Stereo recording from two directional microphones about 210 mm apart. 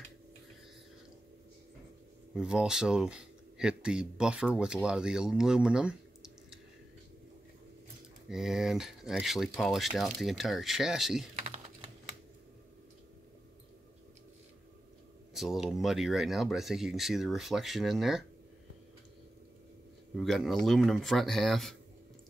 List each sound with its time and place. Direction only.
2.3 s speech: 5° right (ahead or behind)
8.3 s speech: centre (ahead or behind)
11.3 s typing: 35° right (ahead or behind)
15.3 s speech: centre (ahead or behind)
20.2 s speech: centre (ahead or behind)